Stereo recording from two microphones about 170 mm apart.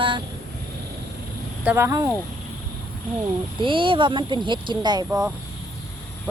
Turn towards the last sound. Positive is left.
turn(degrees=-20)  # may be behind; listen again after turning